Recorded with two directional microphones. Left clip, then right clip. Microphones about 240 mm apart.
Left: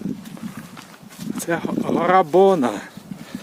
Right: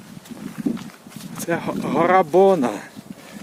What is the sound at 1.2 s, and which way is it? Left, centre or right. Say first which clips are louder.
Speech: left 1 dB; centre.